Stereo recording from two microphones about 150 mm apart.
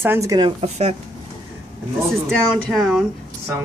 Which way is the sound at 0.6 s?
45° right (ahead or behind).